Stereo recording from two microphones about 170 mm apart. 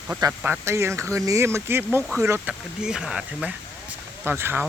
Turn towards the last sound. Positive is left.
turn(degrees=-10)  # may be behind; listen again after turning